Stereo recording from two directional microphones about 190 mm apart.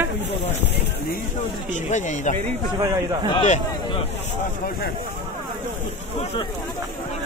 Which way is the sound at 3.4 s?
35° left (ahead or behind).